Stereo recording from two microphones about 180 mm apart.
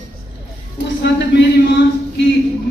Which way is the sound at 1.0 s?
70° left (ahead or behind).